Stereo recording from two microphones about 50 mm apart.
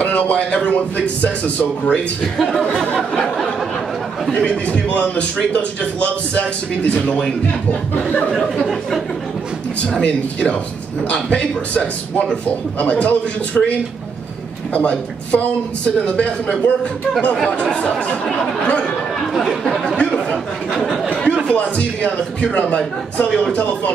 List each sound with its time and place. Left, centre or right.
0.0 s a man's voice: left
3.0 s a sound: centre
4.4 s a man's voice: left
9.9 s a man's voice: left
20.1 s a man's voice: centre
20.7 s speech: centre
21.1 s a sound: left
21.5 s a man's voice: left